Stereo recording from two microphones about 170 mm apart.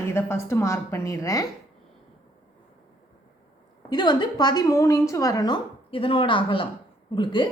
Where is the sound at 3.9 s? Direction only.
25° left (ahead or behind).